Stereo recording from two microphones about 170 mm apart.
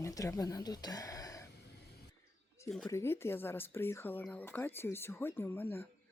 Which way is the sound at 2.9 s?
15° left (ahead or behind).